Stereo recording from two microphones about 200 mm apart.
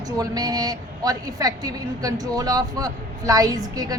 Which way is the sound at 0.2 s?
20° right (ahead or behind).